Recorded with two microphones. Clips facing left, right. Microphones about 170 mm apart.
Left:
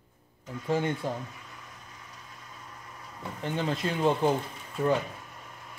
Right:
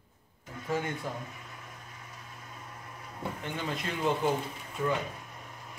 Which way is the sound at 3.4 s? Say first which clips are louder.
Left 8 dB; 30° left (ahead or behind).